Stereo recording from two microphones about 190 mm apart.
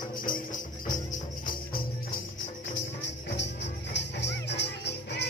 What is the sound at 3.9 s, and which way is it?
Music, 65° left (ahead or behind).